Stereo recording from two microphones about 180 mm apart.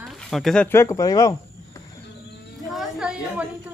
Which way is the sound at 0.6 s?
15° left (ahead or behind).